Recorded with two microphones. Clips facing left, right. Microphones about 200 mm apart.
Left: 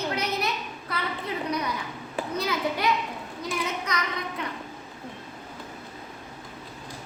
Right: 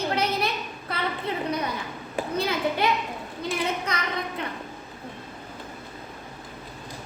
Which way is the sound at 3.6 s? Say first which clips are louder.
Right 2 dB; 30° right (ahead or behind).